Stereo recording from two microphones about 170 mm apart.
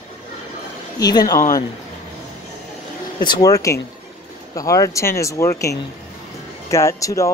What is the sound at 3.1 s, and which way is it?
Speech, 25° left (ahead or behind).